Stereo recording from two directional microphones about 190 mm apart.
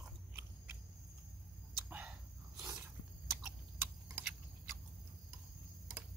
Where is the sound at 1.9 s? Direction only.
5° right (ahead or behind).